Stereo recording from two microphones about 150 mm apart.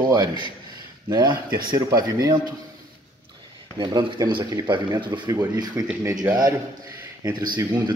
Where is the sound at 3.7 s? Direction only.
30° right (ahead or behind).